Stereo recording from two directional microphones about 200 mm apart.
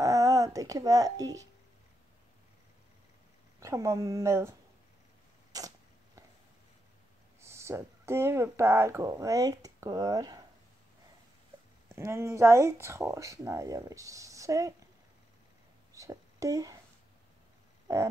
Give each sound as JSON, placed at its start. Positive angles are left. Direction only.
{"t": 0.0, "sound": "speech", "side_deg": -15}
{"t": 3.5, "sound": "speech", "side_deg": -15}
{"t": 5.5, "sound": "a sound", "side_deg": -15}
{"t": 7.4, "sound": "speech", "side_deg": -15}
{"t": 11.9, "sound": "speech", "side_deg": -15}
{"t": 15.9, "sound": "whispering", "side_deg": -15}